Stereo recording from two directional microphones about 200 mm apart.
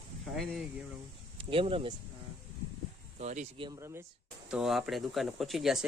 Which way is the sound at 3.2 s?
35° right (ahead or behind).